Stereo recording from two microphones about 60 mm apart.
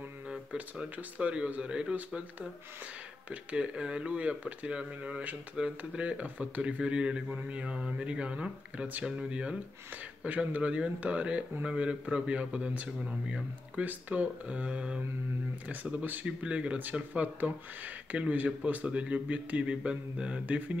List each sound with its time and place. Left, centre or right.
0.6 s speech: right
3.3 s speech: centre